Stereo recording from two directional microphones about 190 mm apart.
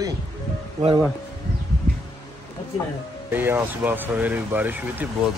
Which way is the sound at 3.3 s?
10° right (ahead or behind).